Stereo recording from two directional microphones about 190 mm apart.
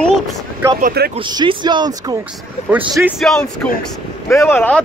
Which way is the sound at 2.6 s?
35° left (ahead or behind).